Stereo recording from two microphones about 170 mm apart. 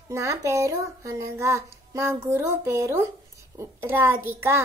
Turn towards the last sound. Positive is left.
turn(degrees=-15)  # may be behind; listen again after turning